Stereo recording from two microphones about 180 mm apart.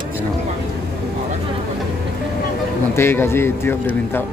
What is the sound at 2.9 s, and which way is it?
A man's voice, 15° left (ahead or behind).